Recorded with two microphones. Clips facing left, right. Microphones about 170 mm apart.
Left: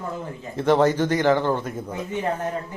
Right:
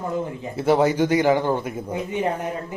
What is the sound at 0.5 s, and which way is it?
Speech, 10° right (ahead or behind).